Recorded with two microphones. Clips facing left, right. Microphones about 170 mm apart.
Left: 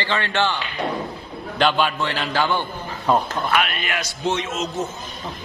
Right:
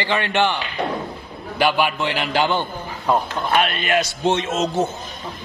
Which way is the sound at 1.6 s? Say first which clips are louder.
Right 1 dB; 10° right (ahead or behind).